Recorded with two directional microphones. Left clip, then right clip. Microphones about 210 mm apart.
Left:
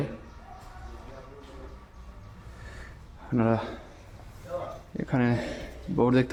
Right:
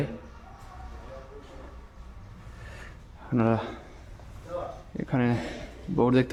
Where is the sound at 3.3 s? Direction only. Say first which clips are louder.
Even; 5° right (ahead or behind).